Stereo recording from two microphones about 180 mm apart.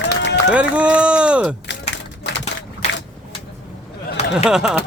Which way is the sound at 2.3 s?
75° left (ahead or behind).